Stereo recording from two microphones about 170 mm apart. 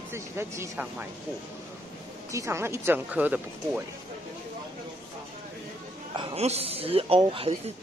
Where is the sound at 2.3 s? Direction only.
15° right (ahead or behind).